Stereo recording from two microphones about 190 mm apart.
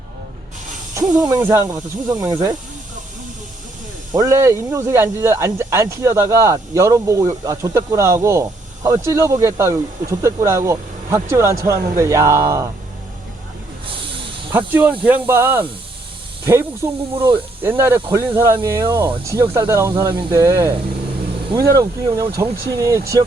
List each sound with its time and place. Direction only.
0.9 s speech: 15° right (ahead or behind)
4.1 s speech: 15° right (ahead or behind)
14.5 s speech: 10° right (ahead or behind)
16.8 s speech: 20° right (ahead or behind)
21.8 s speech: 15° right (ahead or behind)